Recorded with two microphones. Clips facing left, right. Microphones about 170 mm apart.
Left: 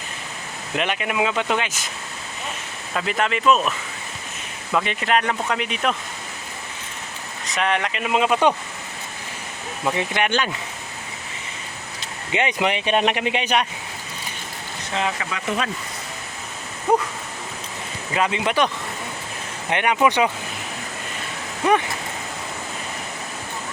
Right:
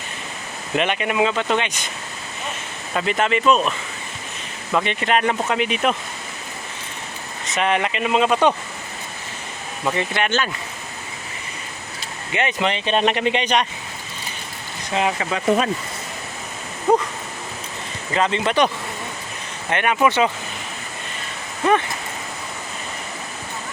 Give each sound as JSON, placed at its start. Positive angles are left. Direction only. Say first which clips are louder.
{"t": 0.8, "sound": "speech", "louder": "right 3 dB", "side_deg": 0}
{"t": 2.9, "sound": "speech", "louder": "right 3 dB", "side_deg": 0}
{"t": 7.5, "sound": "speech", "louder": "right 2 dB", "side_deg": -5}
{"t": 9.8, "sound": "speech", "louder": "even", "side_deg": 10}
{"t": 12.3, "sound": "speech", "louder": "even", "side_deg": 15}
{"t": 15.2, "sound": "speech", "louder": "right 6 dB", "side_deg": -30}
{"t": 16.9, "sound": "a sound", "louder": "right 2 dB", "side_deg": 5}
{"t": 18.1, "sound": "speech", "louder": "right 2 dB", "side_deg": 10}
{"t": 19.7, "sound": "speech", "louder": "even", "side_deg": 15}